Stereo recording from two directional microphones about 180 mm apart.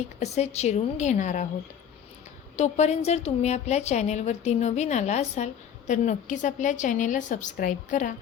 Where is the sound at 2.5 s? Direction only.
40° left (ahead or behind).